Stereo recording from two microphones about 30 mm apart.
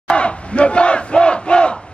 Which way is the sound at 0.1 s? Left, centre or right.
Left.